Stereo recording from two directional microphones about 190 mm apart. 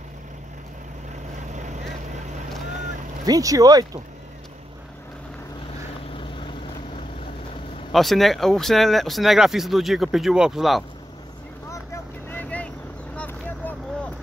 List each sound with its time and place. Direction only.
3.3 s speech: 20° right (ahead or behind)
7.9 s speech: centre (ahead or behind)
11.7 s vehicle: 15° left (ahead or behind)